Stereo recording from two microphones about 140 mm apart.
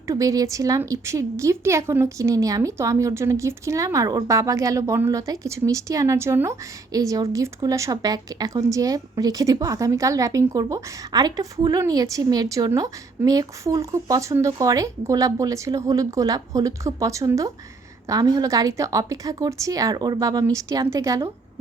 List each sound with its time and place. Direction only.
0.1 s a woman's voice: 25° right (ahead or behind)